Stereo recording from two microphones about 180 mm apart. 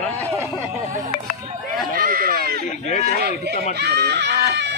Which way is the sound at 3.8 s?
70° right (ahead or behind).